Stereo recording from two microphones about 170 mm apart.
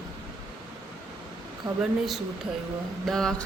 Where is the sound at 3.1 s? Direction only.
5° left (ahead or behind).